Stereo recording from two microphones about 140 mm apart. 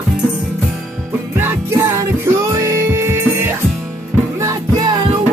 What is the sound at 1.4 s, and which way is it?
Music, 20° right (ahead or behind).